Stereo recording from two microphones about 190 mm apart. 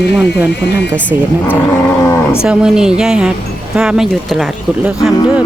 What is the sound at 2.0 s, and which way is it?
Speech, 15° left (ahead or behind).